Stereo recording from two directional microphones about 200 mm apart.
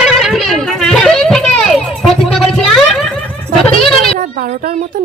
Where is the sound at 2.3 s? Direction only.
Centre (ahead or behind).